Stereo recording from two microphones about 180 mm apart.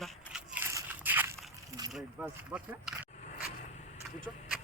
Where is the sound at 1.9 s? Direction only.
5° right (ahead or behind).